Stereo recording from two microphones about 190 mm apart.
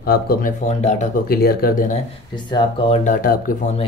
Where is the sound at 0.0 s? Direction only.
55° left (ahead or behind).